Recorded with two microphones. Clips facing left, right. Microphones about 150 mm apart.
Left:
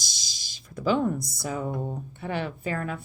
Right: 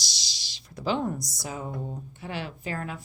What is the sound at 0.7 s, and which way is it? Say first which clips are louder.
Speech: left 4 dB; 50° left (ahead or behind).